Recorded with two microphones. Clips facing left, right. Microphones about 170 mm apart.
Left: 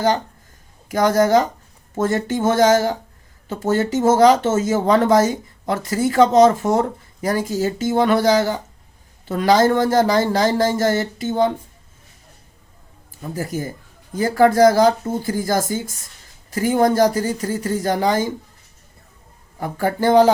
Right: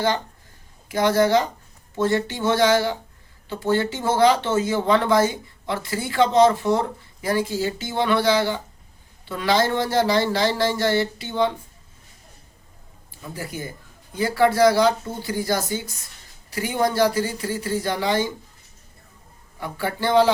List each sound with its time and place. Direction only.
0.9 s speech: 45° left (ahead or behind)
13.3 s speech: 45° left (ahead or behind)
19.5 s speech: 45° left (ahead or behind)